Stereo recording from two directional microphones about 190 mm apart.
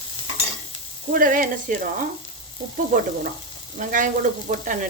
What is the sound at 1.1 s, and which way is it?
Speech, 45° right (ahead or behind).